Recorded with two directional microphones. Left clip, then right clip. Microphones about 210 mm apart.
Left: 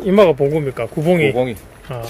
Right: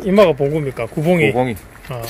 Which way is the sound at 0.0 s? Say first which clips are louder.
Left 1 dB; 10° left (ahead or behind).